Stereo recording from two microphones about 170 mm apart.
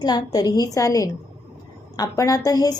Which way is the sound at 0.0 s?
25° left (ahead or behind).